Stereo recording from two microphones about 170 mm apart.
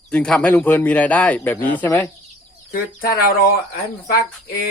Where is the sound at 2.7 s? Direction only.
60° left (ahead or behind).